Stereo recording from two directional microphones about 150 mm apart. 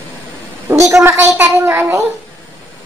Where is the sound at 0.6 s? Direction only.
15° right (ahead or behind).